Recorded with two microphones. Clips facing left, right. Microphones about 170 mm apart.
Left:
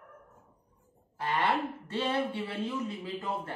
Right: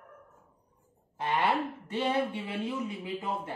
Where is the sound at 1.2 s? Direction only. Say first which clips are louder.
Right 1 dB; 25° right (ahead or behind).